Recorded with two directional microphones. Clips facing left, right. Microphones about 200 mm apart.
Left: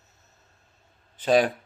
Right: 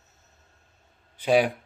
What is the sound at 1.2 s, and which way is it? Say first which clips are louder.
Speech: even; 10° right (ahead or behind).